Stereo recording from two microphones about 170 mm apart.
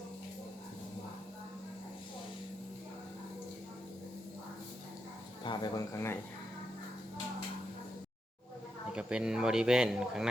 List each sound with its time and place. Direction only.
5.4 s speech: 25° left (ahead or behind)
8.9 s speech: 5° right (ahead or behind)